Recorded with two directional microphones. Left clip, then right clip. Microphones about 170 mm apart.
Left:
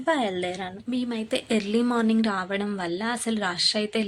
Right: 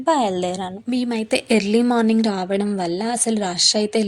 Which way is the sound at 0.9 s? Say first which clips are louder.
Right 7 dB; 45° right (ahead or behind).